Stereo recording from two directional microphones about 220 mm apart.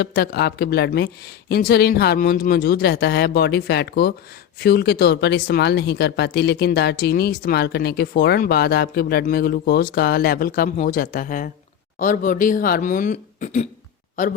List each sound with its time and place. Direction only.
0.0 s speech: 45° left (ahead or behind)